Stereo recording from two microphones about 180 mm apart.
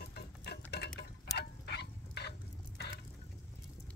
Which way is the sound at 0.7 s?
65° left (ahead or behind).